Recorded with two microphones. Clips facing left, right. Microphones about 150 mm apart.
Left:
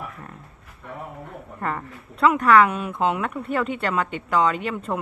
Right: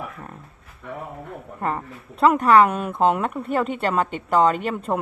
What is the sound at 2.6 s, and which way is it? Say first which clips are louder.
Speech: right 3 dB; 45° right (ahead or behind).